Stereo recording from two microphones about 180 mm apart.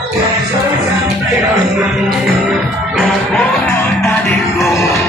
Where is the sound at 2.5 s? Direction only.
5° left (ahead or behind).